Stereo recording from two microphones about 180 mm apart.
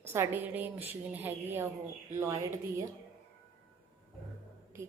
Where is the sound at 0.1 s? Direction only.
10° right (ahead or behind).